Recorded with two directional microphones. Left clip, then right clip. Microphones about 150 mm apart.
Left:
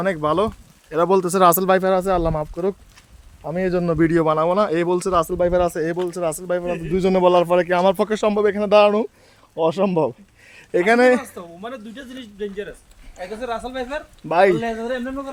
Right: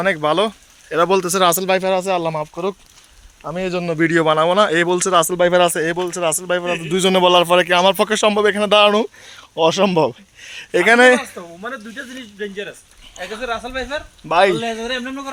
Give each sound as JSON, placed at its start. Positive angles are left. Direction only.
{"t": 0.0, "sound": "speech", "side_deg": 15}
{"t": 2.3, "sound": "speech", "side_deg": 35}
{"t": 3.5, "sound": "speech", "side_deg": 45}
{"t": 3.9, "sound": "speech", "side_deg": 20}
{"t": 6.9, "sound": "a man's voice", "side_deg": 10}
{"t": 11.3, "sound": "speech", "side_deg": -45}
{"t": 13.2, "sound": "speech", "side_deg": 35}
{"t": 14.5, "sound": "speech", "side_deg": 0}
{"t": 14.8, "sound": "a man's voice", "side_deg": -15}